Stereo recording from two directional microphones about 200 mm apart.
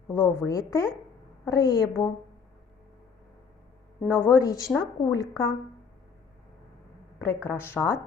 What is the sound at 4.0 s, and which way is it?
Speech, 10° left (ahead or behind).